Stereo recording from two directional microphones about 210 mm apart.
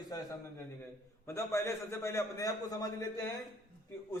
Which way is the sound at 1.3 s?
15° left (ahead or behind).